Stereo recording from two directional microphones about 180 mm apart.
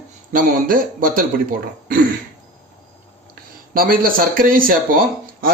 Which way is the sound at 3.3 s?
55° right (ahead or behind).